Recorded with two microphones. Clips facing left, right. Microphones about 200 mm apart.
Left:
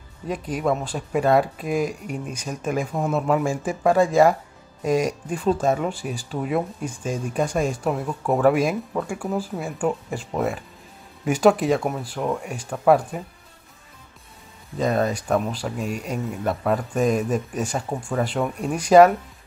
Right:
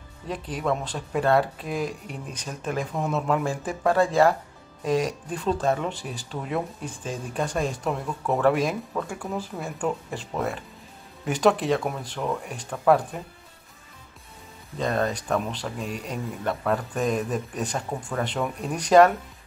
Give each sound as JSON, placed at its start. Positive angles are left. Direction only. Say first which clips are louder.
{"t": 0.3, "sound": "speech", "louder": "left 4 dB", "side_deg": 10}
{"t": 14.8, "sound": "speech", "louder": "left 4 dB", "side_deg": 10}